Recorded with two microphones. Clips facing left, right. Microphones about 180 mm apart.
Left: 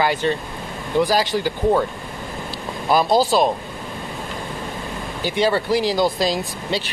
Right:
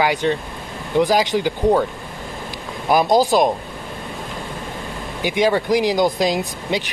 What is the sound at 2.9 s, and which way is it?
Speech, 15° right (ahead or behind).